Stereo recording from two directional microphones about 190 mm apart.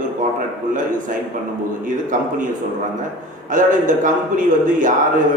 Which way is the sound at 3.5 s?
45° right (ahead or behind).